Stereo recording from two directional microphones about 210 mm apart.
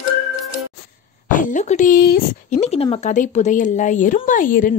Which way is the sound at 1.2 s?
40° left (ahead or behind).